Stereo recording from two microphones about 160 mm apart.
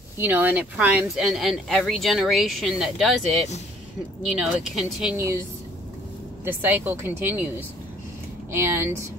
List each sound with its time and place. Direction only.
0.2 s speech: 10° right (ahead or behind)
4.4 s speech: centre (ahead or behind)
5.1 s a woman's voice: 20° right (ahead or behind)
6.4 s a woman's voice: 15° right (ahead or behind)
8.5 s a woman's voice: 15° right (ahead or behind)